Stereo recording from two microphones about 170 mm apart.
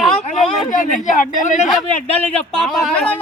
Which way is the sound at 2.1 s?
10° left (ahead or behind).